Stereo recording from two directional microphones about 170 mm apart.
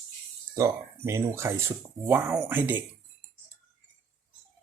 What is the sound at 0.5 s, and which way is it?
Speech, 15° right (ahead or behind).